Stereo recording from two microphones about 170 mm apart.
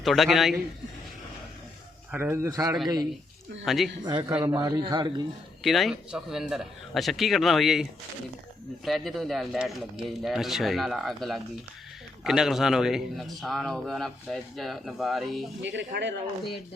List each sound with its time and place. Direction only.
0.0 s a man's voice: centre (ahead or behind)
2.1 s a man's voice: 15° right (ahead or behind)
3.7 s a man's voice: centre (ahead or behind)
4.0 s a man's voice: 25° right (ahead or behind)
4.3 s a man's voice: 10° right (ahead or behind)
4.5 s a man's voice: 25° right (ahead or behind)
5.6 s a man's voice: centre (ahead or behind)
15.6 s speech: 90° right